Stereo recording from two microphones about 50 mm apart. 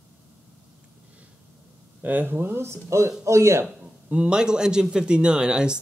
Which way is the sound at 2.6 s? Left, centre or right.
Right.